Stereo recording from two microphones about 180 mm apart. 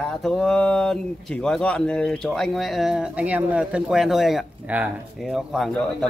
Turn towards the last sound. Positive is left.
turn(degrees=0)  # may be behind; listen again after turning